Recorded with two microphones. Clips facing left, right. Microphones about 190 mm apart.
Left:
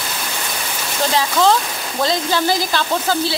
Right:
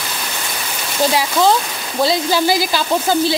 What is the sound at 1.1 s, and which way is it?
A woman's voice, 10° right (ahead or behind).